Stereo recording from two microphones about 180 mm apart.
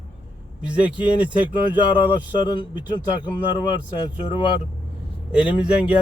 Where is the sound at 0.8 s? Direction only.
25° left (ahead or behind).